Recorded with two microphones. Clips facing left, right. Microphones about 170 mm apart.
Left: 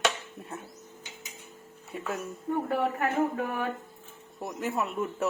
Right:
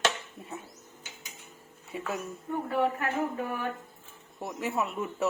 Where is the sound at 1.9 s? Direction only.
5° right (ahead or behind).